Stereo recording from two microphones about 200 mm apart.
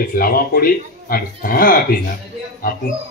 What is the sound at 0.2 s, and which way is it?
A man's voice, 45° left (ahead or behind).